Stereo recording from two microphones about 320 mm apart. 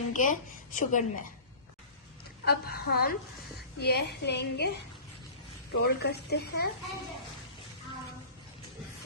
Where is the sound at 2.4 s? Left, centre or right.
Left.